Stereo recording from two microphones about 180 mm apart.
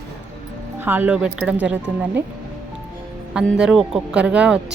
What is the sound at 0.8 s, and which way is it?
Speech, 10° right (ahead or behind).